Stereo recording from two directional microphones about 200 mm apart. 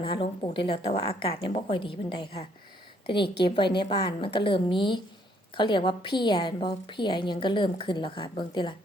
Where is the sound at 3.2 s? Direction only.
55° left (ahead or behind).